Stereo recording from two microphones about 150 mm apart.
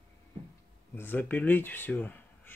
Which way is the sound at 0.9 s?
15° left (ahead or behind).